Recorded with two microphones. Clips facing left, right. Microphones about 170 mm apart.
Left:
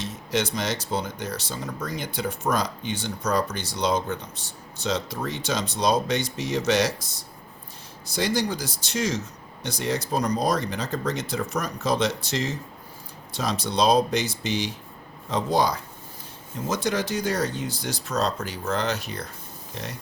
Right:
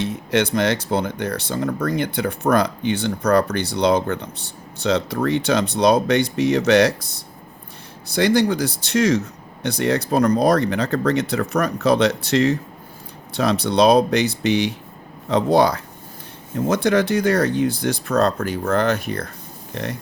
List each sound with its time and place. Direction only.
0.0 s speech: 60° right (ahead or behind)